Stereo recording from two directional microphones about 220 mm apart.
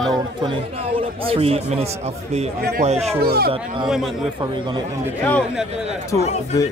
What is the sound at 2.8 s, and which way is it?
Speech, 30° right (ahead or behind).